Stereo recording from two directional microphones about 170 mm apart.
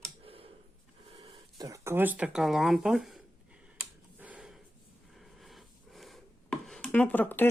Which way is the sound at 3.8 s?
10° right (ahead or behind).